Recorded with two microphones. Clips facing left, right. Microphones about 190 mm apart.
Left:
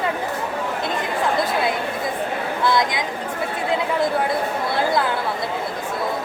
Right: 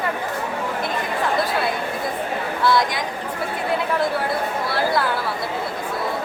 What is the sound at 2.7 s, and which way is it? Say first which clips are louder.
Speech: right 1 dB; 20° left (ahead or behind).